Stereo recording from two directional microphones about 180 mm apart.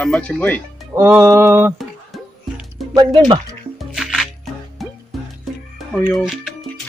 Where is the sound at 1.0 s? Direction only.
15° right (ahead or behind).